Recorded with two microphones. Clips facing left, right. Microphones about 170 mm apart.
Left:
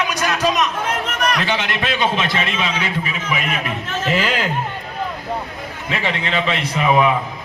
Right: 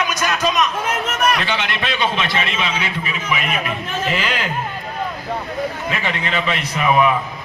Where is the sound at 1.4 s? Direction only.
40° left (ahead or behind).